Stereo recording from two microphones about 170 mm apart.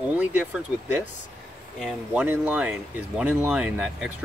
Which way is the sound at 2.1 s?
10° right (ahead or behind).